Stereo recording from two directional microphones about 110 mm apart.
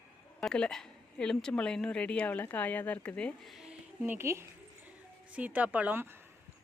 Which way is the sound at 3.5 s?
5° right (ahead or behind).